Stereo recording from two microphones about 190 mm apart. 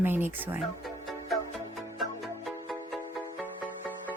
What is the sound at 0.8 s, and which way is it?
Music, centre (ahead or behind).